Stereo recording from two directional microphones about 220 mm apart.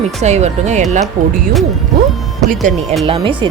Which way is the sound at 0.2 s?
30° right (ahead or behind).